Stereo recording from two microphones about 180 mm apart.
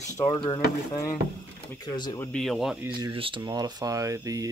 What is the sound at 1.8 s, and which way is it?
Speech, 20° left (ahead or behind).